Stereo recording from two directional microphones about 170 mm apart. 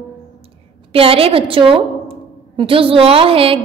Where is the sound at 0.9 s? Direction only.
35° right (ahead or behind).